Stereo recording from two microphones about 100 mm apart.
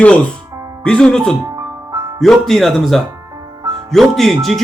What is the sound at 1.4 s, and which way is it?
Music, 35° right (ahead or behind).